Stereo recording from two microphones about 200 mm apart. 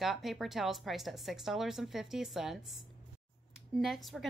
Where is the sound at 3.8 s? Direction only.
Centre (ahead or behind).